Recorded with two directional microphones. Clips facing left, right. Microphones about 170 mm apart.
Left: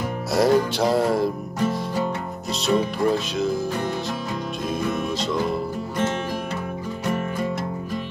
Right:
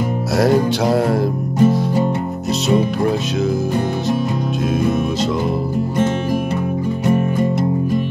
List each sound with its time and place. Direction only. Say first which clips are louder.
0.4 s music: right 3 dB; centre (ahead or behind)